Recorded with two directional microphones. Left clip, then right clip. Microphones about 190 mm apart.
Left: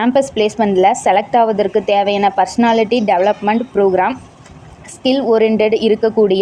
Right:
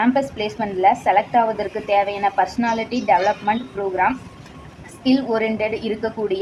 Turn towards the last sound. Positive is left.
turn(degrees=40)  # may be behind; listen again after turning